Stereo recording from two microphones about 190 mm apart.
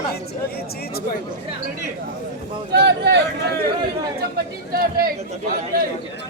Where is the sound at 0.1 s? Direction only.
55° left (ahead or behind).